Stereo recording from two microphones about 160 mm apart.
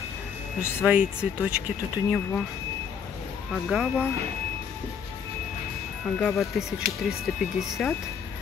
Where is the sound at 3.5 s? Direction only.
Centre (ahead or behind).